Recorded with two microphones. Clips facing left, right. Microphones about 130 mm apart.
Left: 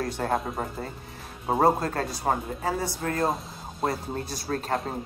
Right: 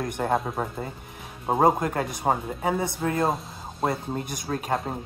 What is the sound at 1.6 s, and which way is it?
Speech, 15° right (ahead or behind).